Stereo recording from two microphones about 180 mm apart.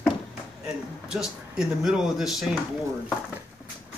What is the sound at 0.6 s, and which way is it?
Speech, 5° right (ahead or behind).